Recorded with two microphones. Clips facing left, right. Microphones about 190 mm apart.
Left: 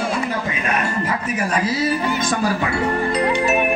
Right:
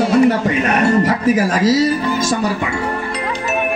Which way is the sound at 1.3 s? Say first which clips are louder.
Right 7 dB; 90° right.